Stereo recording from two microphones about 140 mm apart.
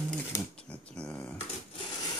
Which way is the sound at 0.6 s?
5° left (ahead or behind).